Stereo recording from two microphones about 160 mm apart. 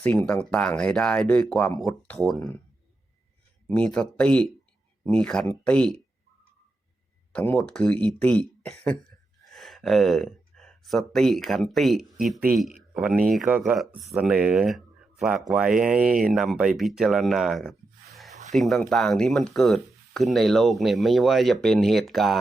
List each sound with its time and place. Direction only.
0.3 s speech: 5° left (ahead or behind)
1.7 s speech: 20° left (ahead or behind)
2.0 s speech: 5° left (ahead or behind)
3.7 s speech: 5° left (ahead or behind)
7.3 s speech: 10° left (ahead or behind)